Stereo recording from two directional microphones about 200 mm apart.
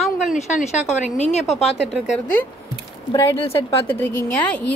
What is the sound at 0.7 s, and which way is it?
Speech, 35° left (ahead or behind).